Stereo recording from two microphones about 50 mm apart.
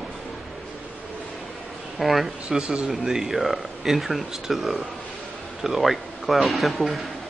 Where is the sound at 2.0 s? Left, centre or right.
Centre.